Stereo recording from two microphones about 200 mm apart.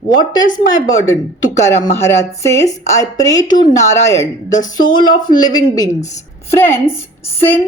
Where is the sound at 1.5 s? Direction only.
15° left (ahead or behind).